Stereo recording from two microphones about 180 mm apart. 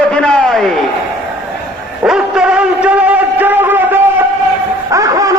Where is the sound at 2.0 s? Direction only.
5° right (ahead or behind); by 5.3 s 20° right (ahead or behind).